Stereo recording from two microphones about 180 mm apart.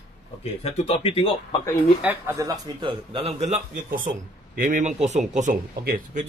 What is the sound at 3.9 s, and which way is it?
Speech, 50° right (ahead or behind).